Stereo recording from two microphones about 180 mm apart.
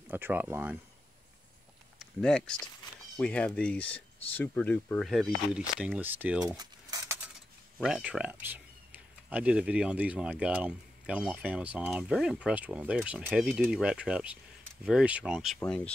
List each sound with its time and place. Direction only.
0.1 s speech: 10° right (ahead or behind)
2.0 s speech: 5° left (ahead or behind)
6.4 s cutlery: 20° right (ahead or behind)
7.8 s speech: 5° right (ahead or behind)